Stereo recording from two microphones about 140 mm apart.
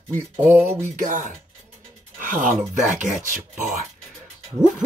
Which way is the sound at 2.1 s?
70° right (ahead or behind).